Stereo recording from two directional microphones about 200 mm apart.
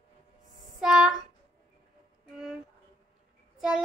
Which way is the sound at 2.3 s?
Centre (ahead or behind).